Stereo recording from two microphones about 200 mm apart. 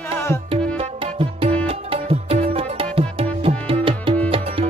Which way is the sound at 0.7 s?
30° right (ahead or behind).